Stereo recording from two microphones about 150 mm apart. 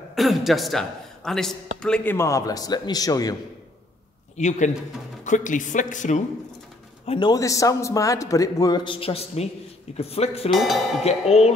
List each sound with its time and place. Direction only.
0.1 s a man's voice: centre (ahead or behind)
2.1 s a man's voice: 20° left (ahead or behind)
4.4 s speech: 55° left (ahead or behind)
7.1 s a man's voice: 30° left (ahead or behind)
10.5 s speech: centre (ahead or behind)
11.1 s speech: 45° left (ahead or behind)